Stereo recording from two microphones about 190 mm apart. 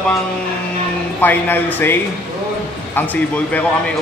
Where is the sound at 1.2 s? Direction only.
10° left (ahead or behind).